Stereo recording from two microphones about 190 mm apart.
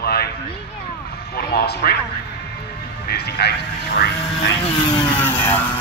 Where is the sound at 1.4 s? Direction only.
55° left (ahead or behind).